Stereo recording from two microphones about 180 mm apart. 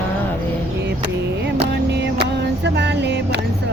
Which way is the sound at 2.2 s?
70° right (ahead or behind).